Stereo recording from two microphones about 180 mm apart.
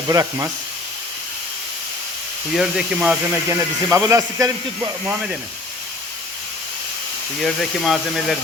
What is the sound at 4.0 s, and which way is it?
Speech, 20° right (ahead or behind).